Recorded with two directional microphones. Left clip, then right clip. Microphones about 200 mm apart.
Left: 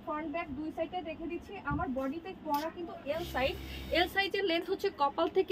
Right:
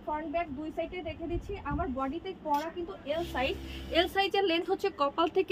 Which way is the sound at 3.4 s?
15° right (ahead or behind).